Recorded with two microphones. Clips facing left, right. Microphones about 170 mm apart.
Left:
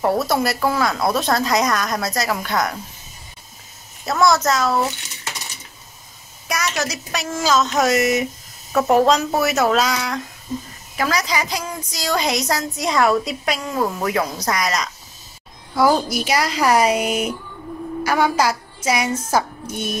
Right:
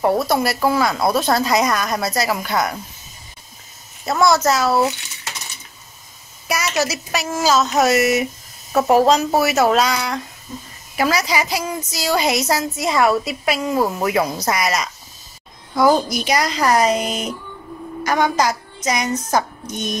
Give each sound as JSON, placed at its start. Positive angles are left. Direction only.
{"t": 0.0, "sound": "a woman's voice", "side_deg": 0}
{"t": 4.0, "sound": "a woman's voice", "side_deg": 0}
{"t": 6.4, "sound": "a woman's voice", "side_deg": -5}
{"t": 15.7, "sound": "a woman's voice", "side_deg": 5}